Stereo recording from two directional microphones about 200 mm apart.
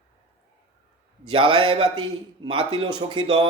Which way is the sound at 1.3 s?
25° right (ahead or behind).